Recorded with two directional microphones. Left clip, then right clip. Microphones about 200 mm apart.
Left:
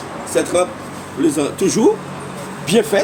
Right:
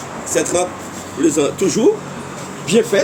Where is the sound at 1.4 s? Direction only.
40° left (ahead or behind).